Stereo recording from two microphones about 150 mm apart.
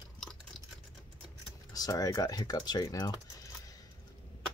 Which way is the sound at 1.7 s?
25° left (ahead or behind).